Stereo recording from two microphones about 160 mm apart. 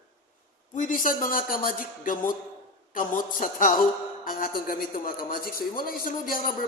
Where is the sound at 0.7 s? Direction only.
55° left (ahead or behind).